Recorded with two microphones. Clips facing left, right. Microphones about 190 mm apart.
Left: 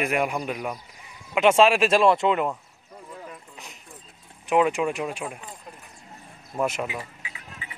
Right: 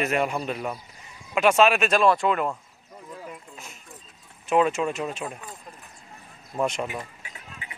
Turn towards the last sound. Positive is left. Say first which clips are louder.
# even
turn(degrees=5)  # may be behind; listen again after turning